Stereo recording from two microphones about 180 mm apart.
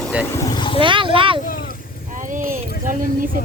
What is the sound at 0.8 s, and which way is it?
Speech, 30° right (ahead or behind).